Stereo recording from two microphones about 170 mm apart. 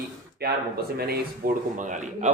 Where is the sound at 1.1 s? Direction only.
55° right (ahead or behind).